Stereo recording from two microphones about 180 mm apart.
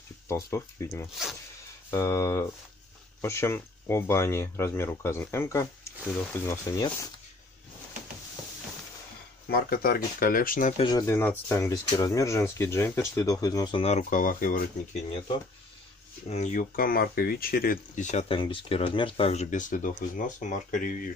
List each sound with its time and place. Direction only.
0.3 s speech: 15° left (ahead or behind)
9.5 s speech: 55° left (ahead or behind)
10.8 s speech: 20° left (ahead or behind); by 14.6 s 50° left (ahead or behind)
16.3 s speech: 40° left (ahead or behind)